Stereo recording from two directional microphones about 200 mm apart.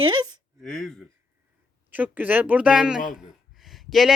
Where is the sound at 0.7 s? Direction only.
Centre (ahead or behind).